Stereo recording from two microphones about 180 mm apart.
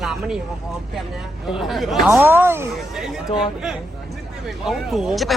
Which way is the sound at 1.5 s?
Centre (ahead or behind).